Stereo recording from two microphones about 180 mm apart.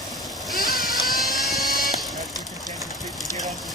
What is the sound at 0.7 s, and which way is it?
Vehicle, centre (ahead or behind).